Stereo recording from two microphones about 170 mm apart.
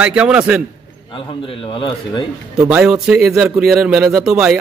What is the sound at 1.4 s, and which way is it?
Speech, 30° left (ahead or behind).